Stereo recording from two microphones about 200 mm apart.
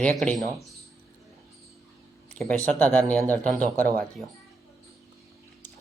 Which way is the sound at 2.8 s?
10° left (ahead or behind).